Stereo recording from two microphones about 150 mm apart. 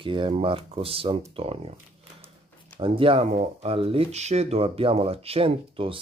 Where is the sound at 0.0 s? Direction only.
35° right (ahead or behind).